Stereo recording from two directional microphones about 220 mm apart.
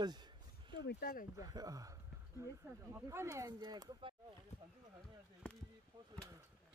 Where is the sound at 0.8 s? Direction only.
45° left (ahead or behind).